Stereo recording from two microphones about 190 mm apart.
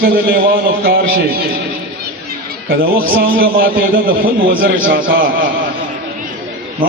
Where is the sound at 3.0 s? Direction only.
50° right (ahead or behind).